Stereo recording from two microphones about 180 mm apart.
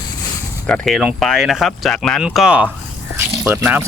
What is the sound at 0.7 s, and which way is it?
Speech, centre (ahead or behind).